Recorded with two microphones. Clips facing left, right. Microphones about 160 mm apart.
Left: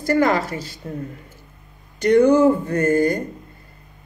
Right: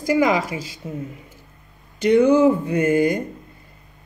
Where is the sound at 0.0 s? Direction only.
10° right (ahead or behind).